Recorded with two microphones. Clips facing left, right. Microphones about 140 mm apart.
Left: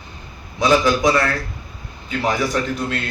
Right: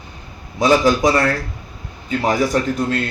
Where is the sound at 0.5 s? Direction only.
40° right (ahead or behind).